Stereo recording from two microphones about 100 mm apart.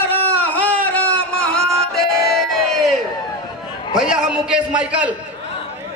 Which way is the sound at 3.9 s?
5° right (ahead or behind).